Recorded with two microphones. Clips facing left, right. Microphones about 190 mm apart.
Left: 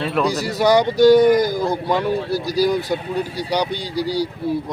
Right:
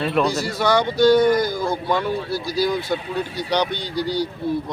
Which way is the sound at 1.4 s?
40° left (ahead or behind).